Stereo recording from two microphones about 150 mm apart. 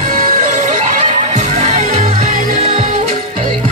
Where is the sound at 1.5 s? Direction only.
50° right (ahead or behind).